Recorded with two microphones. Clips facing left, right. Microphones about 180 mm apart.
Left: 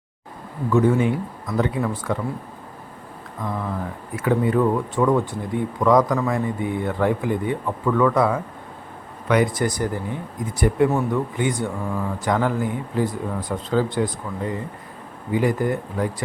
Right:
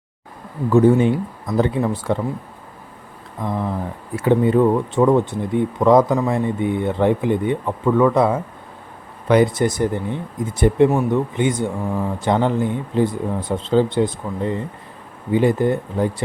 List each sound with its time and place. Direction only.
0.7 s speech: 30° right (ahead or behind)
3.4 s speech: 30° right (ahead or behind)